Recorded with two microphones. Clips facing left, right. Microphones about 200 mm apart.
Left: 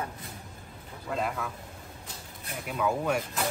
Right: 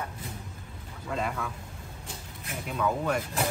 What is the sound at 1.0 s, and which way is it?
Speech, centre (ahead or behind).